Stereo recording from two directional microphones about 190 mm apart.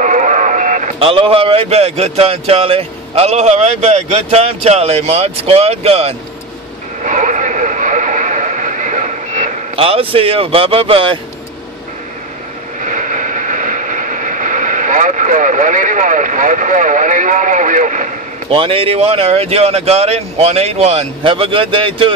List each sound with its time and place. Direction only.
0.0 s speech: 40° right (ahead or behind)
7.0 s radio: 40° right (ahead or behind)
9.8 s speech: 30° right (ahead or behind)
12.8 s vehicle: 40° right (ahead or behind)
18.5 s speech: 30° right (ahead or behind)